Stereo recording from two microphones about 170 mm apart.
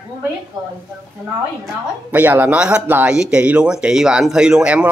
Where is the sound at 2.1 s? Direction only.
10° right (ahead or behind).